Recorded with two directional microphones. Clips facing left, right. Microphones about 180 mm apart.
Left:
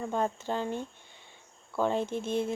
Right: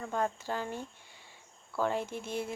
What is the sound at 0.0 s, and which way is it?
Speech, 20° left (ahead or behind).